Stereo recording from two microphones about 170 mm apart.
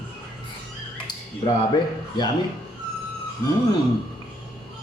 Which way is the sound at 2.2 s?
25° left (ahead or behind).